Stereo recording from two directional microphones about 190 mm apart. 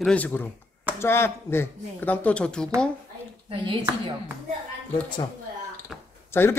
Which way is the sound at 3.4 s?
25° right (ahead or behind).